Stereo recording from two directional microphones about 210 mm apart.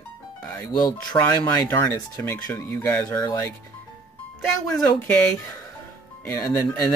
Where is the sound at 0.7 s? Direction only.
20° left (ahead or behind).